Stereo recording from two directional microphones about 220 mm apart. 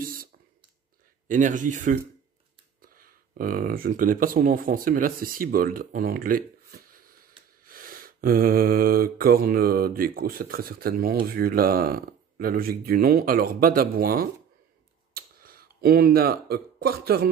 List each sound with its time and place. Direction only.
0.0 s clicking: 40° right (ahead or behind)
1.2 s speech: 35° right (ahead or behind)